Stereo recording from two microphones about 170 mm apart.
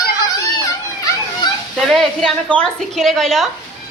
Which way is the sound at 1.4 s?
25° left (ahead or behind).